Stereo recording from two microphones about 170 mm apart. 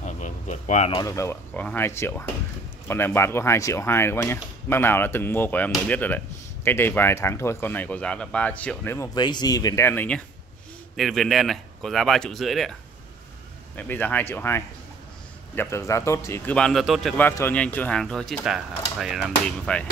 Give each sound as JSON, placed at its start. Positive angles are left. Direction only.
{"t": 0.0, "sound": "a sound", "side_deg": 45}
{"t": 0.9, "sound": "speech", "side_deg": 20}
{"t": 9.1, "sound": "speech", "side_deg": 25}
{"t": 13.7, "sound": "speech", "side_deg": 10}
{"t": 17.2, "sound": "speech", "side_deg": 15}